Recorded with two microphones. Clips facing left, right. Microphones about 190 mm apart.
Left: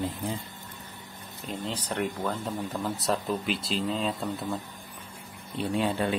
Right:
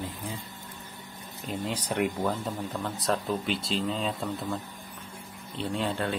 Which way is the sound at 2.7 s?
5° left (ahead or behind).